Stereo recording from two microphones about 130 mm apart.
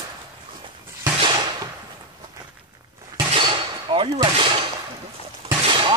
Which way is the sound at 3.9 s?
40° right (ahead or behind).